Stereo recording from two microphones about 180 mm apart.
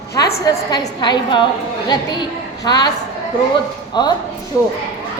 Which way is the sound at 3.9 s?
25° left (ahead or behind).